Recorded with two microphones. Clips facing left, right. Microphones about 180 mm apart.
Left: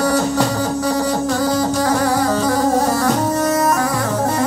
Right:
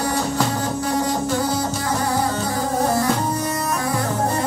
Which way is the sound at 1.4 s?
90° left.